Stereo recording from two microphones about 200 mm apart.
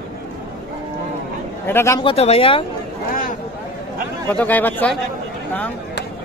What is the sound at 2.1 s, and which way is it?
Speech, 30° left (ahead or behind).